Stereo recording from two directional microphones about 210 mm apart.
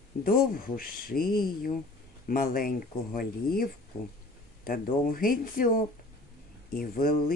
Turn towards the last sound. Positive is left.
turn(degrees=45)  # may be behind; listen again after turning